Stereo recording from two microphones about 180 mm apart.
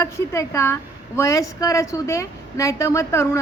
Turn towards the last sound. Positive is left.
turn(degrees=15)  # may be behind; listen again after turning